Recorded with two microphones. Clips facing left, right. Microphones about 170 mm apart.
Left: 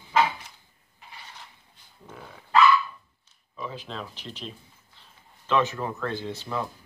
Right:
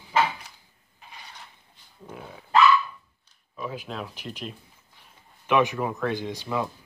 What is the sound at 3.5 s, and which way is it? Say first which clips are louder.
Speech: right 2 dB; 10° right (ahead or behind).